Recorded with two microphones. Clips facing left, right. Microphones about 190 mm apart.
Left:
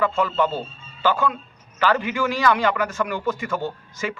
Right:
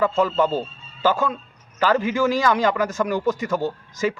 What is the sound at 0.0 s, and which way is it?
A man's voice, 40° right (ahead or behind).